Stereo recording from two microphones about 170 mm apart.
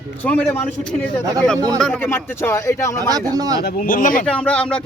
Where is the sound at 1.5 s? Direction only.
20° right (ahead or behind).